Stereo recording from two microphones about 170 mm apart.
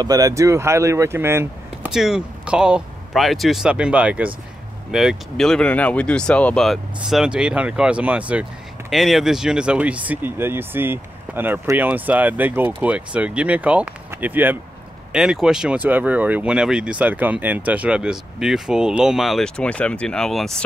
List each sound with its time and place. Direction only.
0.0 s speech: 20° right (ahead or behind)
1.9 s speech: 5° right (ahead or behind)